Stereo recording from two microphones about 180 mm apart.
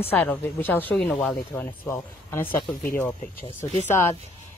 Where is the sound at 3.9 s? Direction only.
15° left (ahead or behind).